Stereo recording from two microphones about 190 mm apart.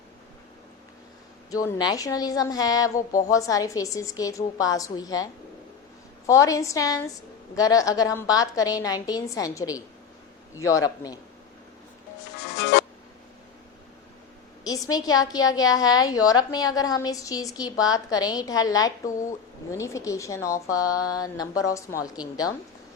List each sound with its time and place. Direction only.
1.5 s a woman's voice: 20° left (ahead or behind)
12.7 s music: 60° left (ahead or behind)
14.7 s a woman's voice: 20° left (ahead or behind)